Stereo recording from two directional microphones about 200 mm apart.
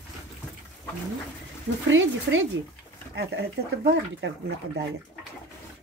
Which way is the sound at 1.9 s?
75° right (ahead or behind).